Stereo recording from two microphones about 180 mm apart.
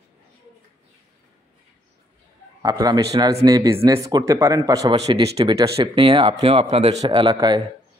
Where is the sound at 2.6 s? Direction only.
20° right (ahead or behind).